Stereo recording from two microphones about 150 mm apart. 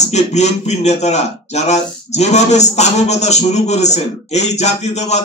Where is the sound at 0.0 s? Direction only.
50° left (ahead or behind).